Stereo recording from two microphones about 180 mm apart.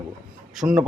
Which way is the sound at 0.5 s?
5° right (ahead or behind).